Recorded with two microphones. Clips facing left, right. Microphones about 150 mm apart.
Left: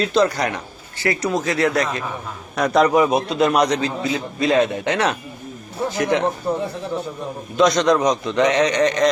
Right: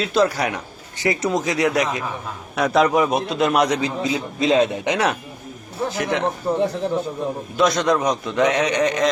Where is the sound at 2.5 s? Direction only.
Centre (ahead or behind).